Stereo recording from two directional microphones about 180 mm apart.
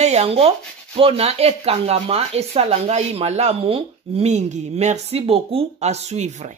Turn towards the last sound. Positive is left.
turn(degrees=-40)  # may be behind; listen again after turning